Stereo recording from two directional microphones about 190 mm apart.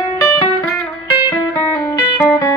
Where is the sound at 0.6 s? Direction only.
25° left (ahead or behind).